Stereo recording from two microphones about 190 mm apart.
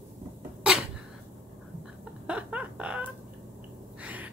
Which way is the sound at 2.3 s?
5° right (ahead or behind).